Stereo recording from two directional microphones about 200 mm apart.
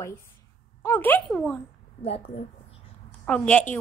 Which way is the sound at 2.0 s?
30° left (ahead or behind).